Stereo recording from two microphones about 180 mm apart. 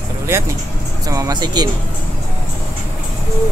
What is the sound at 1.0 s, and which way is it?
Speech, 20° right (ahead or behind).